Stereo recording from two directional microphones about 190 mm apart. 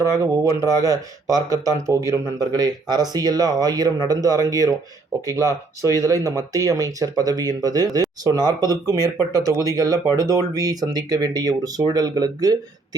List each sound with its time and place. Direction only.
0.0 s speech: 15° right (ahead or behind)